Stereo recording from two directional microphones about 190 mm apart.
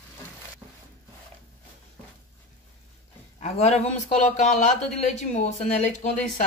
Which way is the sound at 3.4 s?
35° left (ahead or behind).